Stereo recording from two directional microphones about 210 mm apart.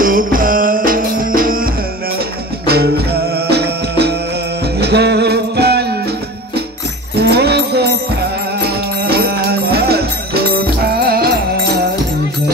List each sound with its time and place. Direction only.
0.0 s music: 40° right (ahead or behind)
7.2 s music: 50° right (ahead or behind)